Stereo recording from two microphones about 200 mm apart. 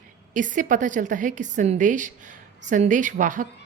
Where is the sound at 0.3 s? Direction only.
40° right (ahead or behind).